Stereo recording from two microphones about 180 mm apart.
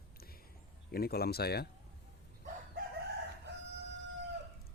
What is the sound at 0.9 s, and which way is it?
Speech, 60° left (ahead or behind).